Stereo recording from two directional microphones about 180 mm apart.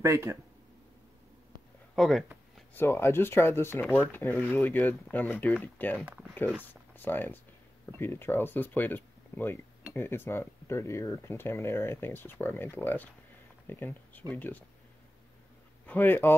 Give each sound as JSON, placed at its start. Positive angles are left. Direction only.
{"t": 0.0, "sound": "speech", "side_deg": -15}
{"t": 2.0, "sound": "speech", "side_deg": 0}
{"t": 2.7, "sound": "speech", "side_deg": 10}
{"t": 6.0, "sound": "speech", "side_deg": -5}
{"t": 6.7, "sound": "speech", "side_deg": 10}
{"t": 15.9, "sound": "speech", "side_deg": 10}